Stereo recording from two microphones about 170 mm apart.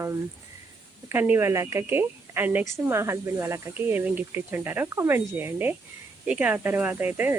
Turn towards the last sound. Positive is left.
turn(degrees=-10)  # may be behind; listen again after turning